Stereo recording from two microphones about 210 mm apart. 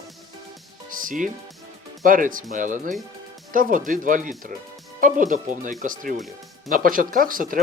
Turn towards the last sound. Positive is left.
turn(degrees=-40)  # may be behind; listen again after turning